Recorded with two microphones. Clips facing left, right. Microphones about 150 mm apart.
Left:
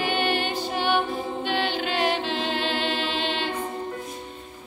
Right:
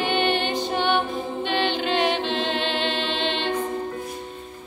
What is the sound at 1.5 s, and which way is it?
A capella, 5° left (ahead or behind).